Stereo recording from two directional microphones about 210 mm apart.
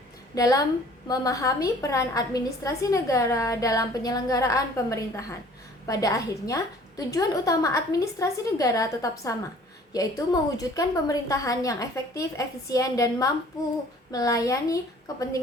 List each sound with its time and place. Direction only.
0.3 s a woman's voice: 15° left (ahead or behind)